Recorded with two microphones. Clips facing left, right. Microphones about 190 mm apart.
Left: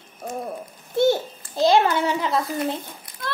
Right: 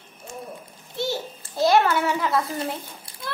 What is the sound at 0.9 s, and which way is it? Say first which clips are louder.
Babbling: left 9 dB; 55° left (ahead or behind).